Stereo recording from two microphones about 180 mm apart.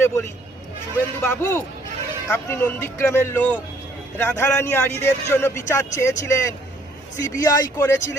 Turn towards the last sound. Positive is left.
turn(degrees=15)  # may be behind; listen again after turning